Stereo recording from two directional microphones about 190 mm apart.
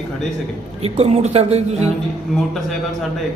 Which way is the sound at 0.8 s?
30° right (ahead or behind).